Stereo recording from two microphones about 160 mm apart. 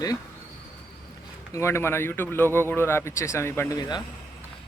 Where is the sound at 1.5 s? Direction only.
15° left (ahead or behind).